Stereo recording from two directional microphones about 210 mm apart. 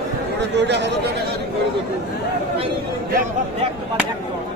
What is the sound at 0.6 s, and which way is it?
Speech, 55° right (ahead or behind).